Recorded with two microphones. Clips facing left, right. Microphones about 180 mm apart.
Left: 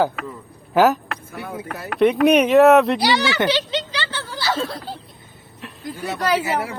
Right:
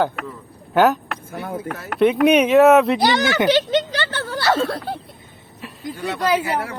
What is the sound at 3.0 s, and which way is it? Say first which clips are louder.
Speech: right 2 dB; 50° right (ahead or behind).